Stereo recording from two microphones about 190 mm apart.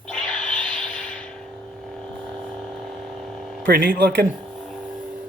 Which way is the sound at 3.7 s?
50° right (ahead or behind).